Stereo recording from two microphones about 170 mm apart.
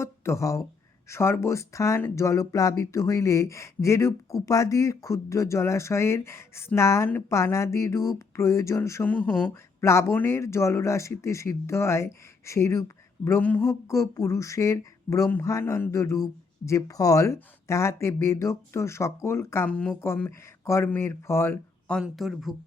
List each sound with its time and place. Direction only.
0.0 s speech: 15° left (ahead or behind)
22.0 s speech: centre (ahead or behind)